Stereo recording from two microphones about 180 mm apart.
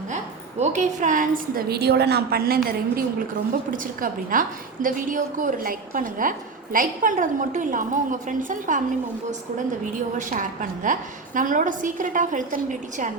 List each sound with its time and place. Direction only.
0.6 s a woman's voice: 40° right (ahead or behind)
10.2 s a woman's voice: 45° right (ahead or behind)